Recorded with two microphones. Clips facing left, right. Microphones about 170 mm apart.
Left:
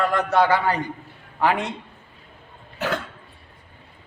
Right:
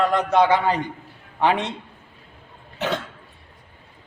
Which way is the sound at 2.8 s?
20° right (ahead or behind).